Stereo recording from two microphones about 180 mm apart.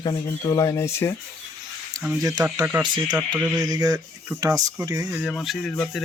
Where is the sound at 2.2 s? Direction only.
20° right (ahead or behind).